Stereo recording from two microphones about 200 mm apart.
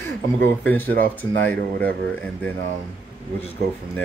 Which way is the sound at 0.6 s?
10° left (ahead or behind).